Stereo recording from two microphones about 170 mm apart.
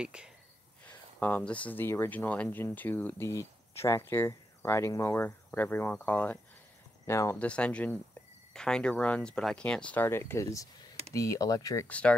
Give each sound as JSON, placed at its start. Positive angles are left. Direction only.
{"t": 0.0, "sound": "speech", "side_deg": -5}
{"t": 0.8, "sound": "speech", "side_deg": 10}
{"t": 7.3, "sound": "speech", "side_deg": 5}